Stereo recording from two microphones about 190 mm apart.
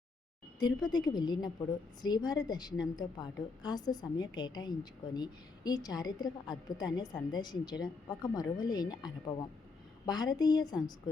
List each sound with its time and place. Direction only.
0.6 s a woman's voice: 20° left (ahead or behind)